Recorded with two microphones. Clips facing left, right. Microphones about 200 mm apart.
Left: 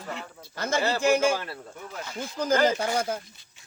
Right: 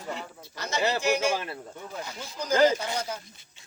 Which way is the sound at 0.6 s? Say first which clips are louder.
Left 4 dB; 50° left (ahead or behind).